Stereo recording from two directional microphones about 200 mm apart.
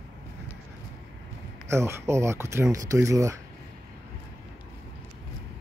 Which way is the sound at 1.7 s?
15° right (ahead or behind).